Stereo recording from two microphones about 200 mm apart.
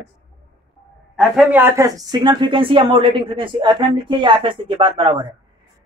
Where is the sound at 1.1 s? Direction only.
5° right (ahead or behind); by 5.2 s 25° right (ahead or behind).